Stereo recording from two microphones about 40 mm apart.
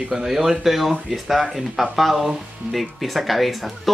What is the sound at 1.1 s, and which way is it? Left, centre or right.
Speech, centre.